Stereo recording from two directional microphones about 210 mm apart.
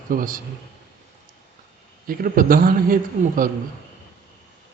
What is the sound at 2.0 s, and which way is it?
A man's voice, 40° right (ahead or behind).